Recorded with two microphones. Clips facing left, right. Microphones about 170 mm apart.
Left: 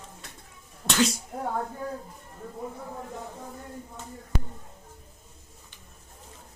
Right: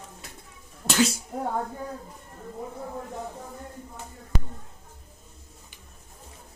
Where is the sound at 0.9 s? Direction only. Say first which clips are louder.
Right 1 dB; 5° right (ahead or behind).